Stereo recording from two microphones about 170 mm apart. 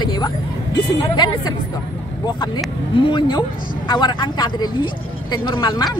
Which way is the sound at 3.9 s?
25° left (ahead or behind).